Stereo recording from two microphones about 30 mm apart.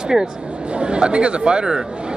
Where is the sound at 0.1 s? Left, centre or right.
Centre.